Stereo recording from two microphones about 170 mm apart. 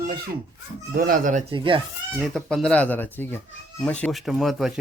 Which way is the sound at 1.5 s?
30° right (ahead or behind).